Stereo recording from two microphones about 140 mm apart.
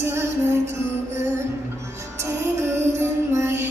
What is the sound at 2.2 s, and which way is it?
Music, 20° right (ahead or behind).